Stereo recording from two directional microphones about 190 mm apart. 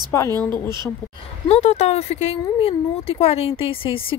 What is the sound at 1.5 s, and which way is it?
Speech, 35° left (ahead or behind).